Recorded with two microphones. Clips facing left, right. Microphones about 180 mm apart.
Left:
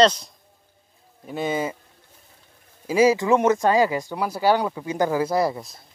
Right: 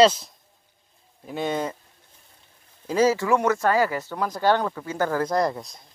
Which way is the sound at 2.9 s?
10° left (ahead or behind).